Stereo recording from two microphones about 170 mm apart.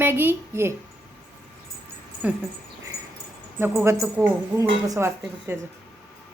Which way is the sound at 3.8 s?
15° right (ahead or behind).